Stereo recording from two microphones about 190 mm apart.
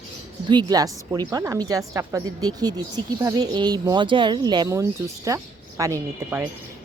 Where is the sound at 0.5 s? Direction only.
20° right (ahead or behind).